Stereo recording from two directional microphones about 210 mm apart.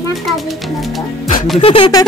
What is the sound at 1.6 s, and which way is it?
Music, 25° left (ahead or behind).